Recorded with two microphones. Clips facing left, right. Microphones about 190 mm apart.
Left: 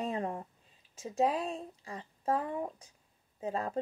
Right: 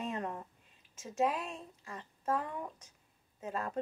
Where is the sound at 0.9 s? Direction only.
35° left (ahead or behind).